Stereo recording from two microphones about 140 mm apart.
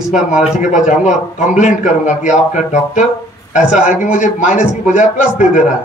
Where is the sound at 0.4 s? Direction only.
60° left (ahead or behind).